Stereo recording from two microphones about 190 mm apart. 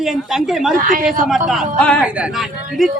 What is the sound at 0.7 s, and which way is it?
Speech, 45° right (ahead or behind).